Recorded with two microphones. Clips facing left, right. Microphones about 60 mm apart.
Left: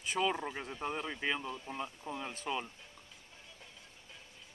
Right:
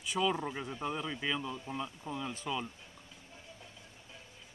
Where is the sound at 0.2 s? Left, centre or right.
Centre.